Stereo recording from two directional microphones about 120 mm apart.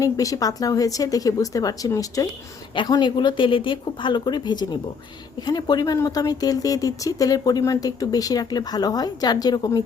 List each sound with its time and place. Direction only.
0.0 s a woman's voice: 30° left (ahead or behind)